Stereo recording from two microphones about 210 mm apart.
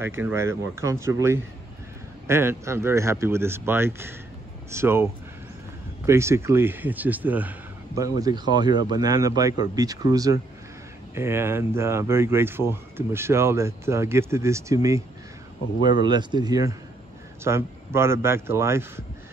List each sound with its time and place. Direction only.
0.0 s speech: 10° right (ahead or behind)